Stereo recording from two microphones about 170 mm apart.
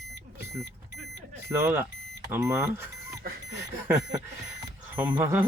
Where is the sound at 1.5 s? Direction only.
15° right (ahead or behind).